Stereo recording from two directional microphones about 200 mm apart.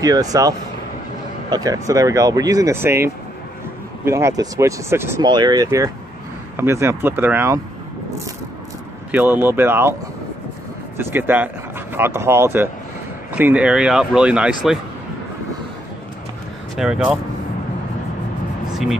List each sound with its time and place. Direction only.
0.0 s speech: 20° right (ahead or behind)
9.1 s speech: 10° right (ahead or behind)
11.0 s speech: 10° right (ahead or behind)
16.7 s speech: 5° right (ahead or behind)